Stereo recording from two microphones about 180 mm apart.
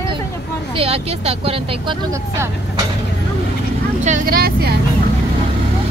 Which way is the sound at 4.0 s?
50° right (ahead or behind).